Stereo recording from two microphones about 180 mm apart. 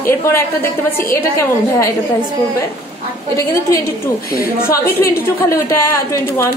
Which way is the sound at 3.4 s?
15° left (ahead or behind).